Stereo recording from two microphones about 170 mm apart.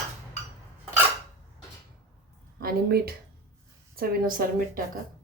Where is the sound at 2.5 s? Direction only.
65° right (ahead or behind).